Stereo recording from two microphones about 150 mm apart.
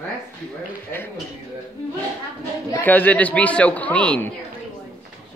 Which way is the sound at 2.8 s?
10° left (ahead or behind).